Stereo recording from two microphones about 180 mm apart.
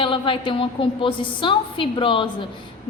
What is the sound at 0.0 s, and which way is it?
A woman's voice, 30° left (ahead or behind).